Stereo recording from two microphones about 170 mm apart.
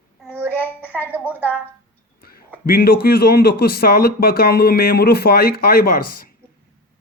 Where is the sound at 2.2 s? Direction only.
60° left (ahead or behind).